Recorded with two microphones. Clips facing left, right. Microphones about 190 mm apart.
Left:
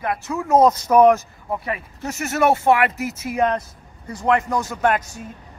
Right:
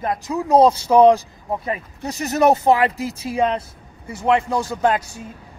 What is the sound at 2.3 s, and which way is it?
Speech, 40° right (ahead or behind).